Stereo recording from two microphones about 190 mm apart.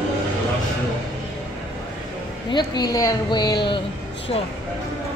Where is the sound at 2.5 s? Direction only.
20° left (ahead or behind).